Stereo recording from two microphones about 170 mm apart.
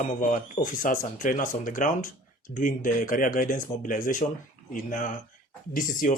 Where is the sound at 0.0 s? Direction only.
50° left (ahead or behind).